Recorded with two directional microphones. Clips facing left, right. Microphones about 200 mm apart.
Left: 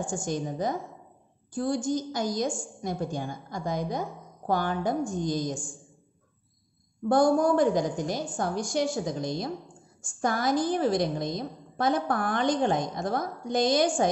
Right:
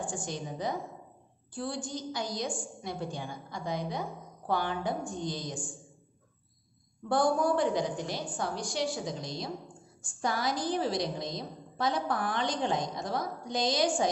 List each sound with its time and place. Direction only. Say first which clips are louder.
0.0 s a woman's voice: left 6 dB; 45° left (ahead or behind)
7.1 s a woman's voice: left 5 dB; 45° left (ahead or behind)